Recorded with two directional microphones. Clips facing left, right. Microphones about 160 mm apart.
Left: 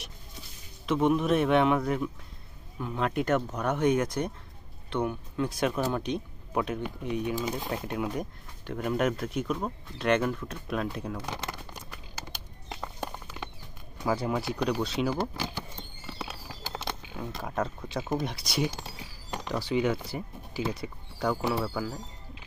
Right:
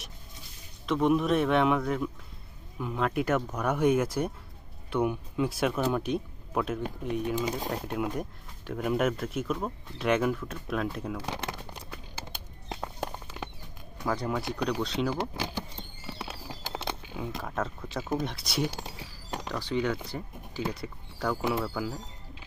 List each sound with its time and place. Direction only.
0.8 s speech: centre (ahead or behind)
11.2 s speech: 15° right (ahead or behind)
13.0 s clip-clop: centre (ahead or behind)
14.0 s speech: 5° left (ahead or behind)
16.1 s a sound: 10° right (ahead or behind)
16.8 s speech: 5° right (ahead or behind)